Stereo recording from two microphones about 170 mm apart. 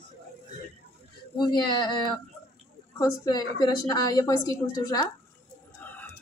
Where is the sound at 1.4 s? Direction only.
25° left (ahead or behind).